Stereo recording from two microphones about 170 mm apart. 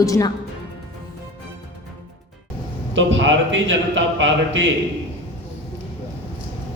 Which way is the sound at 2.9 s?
90° right.